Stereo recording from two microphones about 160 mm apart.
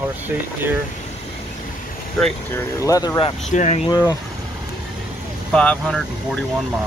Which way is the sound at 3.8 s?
25° left (ahead or behind).